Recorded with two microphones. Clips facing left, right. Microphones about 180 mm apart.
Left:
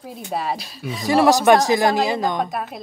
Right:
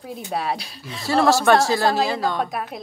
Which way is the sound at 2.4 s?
Centre (ahead or behind).